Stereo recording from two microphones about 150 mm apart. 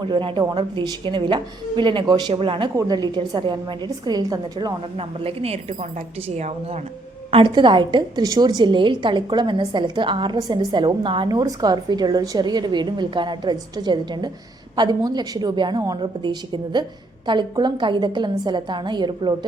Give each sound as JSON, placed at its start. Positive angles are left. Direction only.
{"t": 0.0, "sound": "a woman's voice", "side_deg": -30}
{"t": 4.9, "sound": "a woman's voice", "side_deg": -40}
{"t": 7.3, "sound": "a woman's voice", "side_deg": -35}